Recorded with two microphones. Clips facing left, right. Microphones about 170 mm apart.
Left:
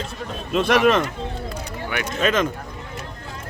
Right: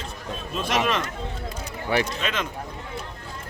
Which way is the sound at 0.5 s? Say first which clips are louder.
Left 9 dB; 70° left (ahead or behind).